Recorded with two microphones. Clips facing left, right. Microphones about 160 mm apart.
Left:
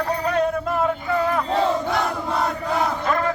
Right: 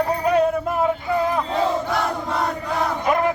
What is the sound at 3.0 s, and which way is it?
Chant, 15° right (ahead or behind).